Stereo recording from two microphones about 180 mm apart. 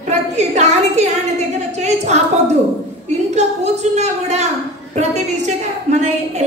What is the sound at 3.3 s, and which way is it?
A woman's voice, 40° right (ahead or behind).